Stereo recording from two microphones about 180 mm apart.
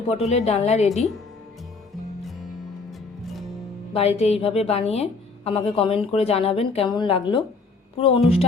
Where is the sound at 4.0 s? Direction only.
35° left (ahead or behind).